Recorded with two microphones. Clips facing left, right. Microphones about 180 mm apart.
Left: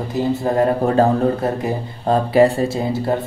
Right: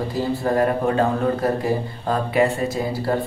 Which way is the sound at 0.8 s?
35° left (ahead or behind).